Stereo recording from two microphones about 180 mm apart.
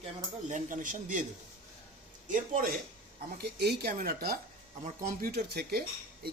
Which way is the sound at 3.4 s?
65° right (ahead or behind).